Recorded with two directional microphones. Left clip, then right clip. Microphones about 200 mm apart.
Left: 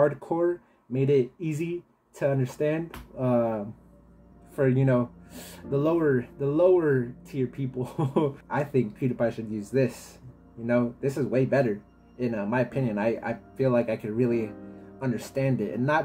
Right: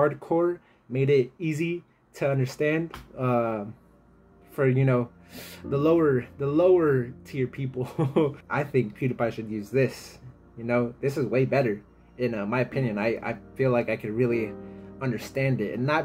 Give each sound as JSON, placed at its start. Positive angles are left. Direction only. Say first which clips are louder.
{"t": 0.0, "sound": "speech", "louder": "even", "side_deg": -5}